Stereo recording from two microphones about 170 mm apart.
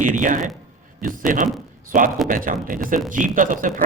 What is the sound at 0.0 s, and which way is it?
Speech, 50° right (ahead or behind).